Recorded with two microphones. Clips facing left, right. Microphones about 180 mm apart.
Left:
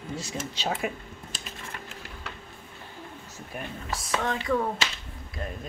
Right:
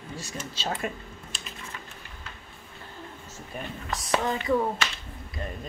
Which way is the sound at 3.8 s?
Centre (ahead or behind).